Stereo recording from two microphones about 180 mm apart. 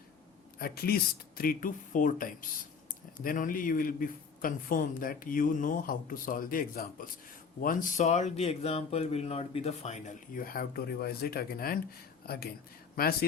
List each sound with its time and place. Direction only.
0.6 s a man's voice: 60° left (ahead or behind); by 10.0 s 35° left (ahead or behind)
10.3 s speech: 55° left (ahead or behind)